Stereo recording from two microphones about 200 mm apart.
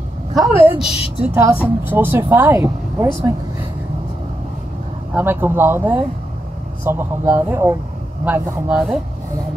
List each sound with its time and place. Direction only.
0.3 s a man's voice: 5° right (ahead or behind)
5.1 s a man's voice: 10° right (ahead or behind)